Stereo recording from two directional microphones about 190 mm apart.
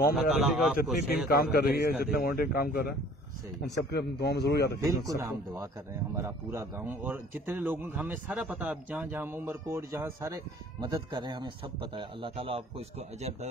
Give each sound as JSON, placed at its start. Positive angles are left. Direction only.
{"t": 0.1, "sound": "speech", "side_deg": 0}
{"t": 1.3, "sound": "a man's voice", "side_deg": 55}
{"t": 4.8, "sound": "a man's voice", "side_deg": -20}